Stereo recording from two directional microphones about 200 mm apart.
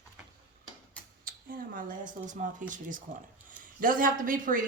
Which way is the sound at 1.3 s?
45° right (ahead or behind).